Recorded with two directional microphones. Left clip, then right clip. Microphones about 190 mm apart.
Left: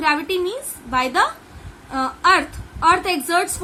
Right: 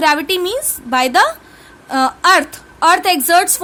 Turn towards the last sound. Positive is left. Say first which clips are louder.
# right 7 dB
turn(degrees=-55)  # may be behind; listen again after turning